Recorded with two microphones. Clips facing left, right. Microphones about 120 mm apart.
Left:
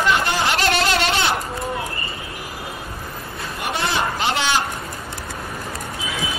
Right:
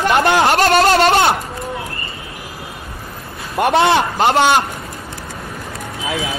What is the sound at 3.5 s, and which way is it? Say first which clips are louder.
A man's voice: right 11 dB; 60° right (ahead or behind).